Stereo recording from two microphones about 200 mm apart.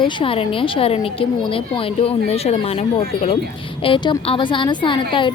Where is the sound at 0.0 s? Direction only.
25° left (ahead or behind).